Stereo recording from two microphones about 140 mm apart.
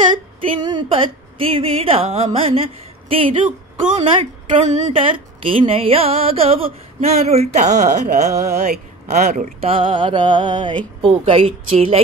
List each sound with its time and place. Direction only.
0.6 s mantra: 30° right (ahead or behind)
1.6 s mantra: 40° right (ahead or behind)
3.1 s speech: 40° right (ahead or behind)
4.0 s speech: 50° right (ahead or behind)
4.9 s a man's voice: 40° right (ahead or behind); by 9.7 s 55° right (ahead or behind)
9.7 s mantra: 40° right (ahead or behind)
11.1 s speech: 40° right (ahead or behind)